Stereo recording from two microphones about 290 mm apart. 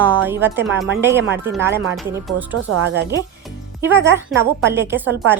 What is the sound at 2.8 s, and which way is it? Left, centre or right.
Speech, right.